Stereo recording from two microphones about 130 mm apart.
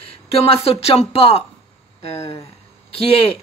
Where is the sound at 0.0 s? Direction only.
45° left (ahead or behind).